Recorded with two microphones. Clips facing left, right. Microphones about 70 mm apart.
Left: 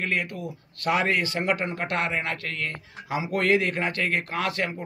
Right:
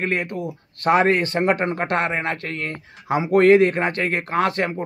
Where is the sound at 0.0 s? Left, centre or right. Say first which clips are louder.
Right 5 dB; right.